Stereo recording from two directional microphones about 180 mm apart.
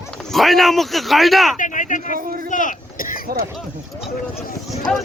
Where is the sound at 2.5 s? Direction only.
45° left (ahead or behind).